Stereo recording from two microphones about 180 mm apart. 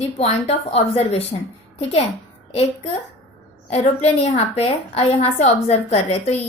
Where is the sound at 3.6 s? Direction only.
35° left (ahead or behind).